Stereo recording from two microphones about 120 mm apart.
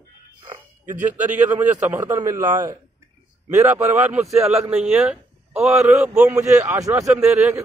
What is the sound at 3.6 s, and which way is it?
A man's voice, 25° right (ahead or behind).